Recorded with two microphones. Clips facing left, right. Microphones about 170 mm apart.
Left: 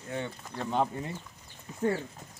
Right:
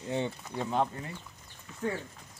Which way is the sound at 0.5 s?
Centre (ahead or behind).